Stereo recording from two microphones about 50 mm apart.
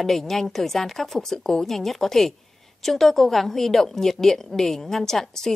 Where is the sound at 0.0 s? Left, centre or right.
Centre.